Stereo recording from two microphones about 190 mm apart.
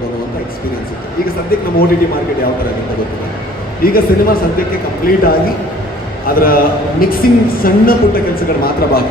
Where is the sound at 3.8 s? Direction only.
50° left (ahead or behind).